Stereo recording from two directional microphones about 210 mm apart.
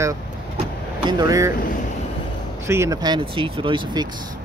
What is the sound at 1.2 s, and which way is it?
Speech, 15° right (ahead or behind).